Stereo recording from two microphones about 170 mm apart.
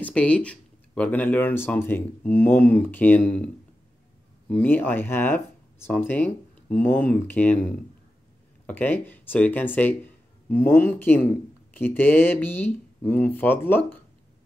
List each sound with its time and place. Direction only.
0.0 s speech: 5° left (ahead or behind)
4.5 s speech: 10° left (ahead or behind)